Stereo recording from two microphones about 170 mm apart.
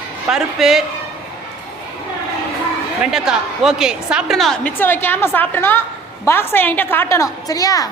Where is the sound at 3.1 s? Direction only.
5° right (ahead or behind); by 7.9 s 20° left (ahead or behind).